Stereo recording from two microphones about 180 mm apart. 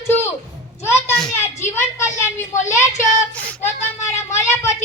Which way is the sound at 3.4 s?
10° left (ahead or behind).